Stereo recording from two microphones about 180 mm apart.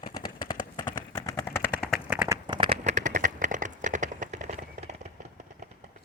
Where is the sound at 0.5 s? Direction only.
25° left (ahead or behind).